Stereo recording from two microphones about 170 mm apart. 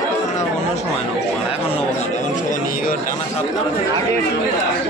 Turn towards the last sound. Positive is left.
turn(degrees=50)  # may be behind; listen again after turning